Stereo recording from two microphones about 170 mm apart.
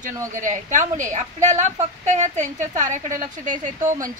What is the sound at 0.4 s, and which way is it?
A woman's voice, 45° right (ahead or behind).